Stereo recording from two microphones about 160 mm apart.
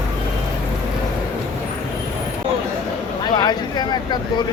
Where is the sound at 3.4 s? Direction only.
25° left (ahead or behind).